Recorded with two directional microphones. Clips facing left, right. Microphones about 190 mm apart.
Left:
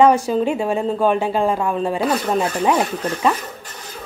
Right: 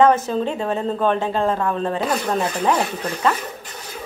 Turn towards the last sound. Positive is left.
turn(degrees=10)  # may be behind; listen again after turning